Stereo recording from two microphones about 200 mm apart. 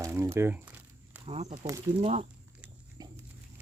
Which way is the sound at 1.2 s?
35° right (ahead or behind).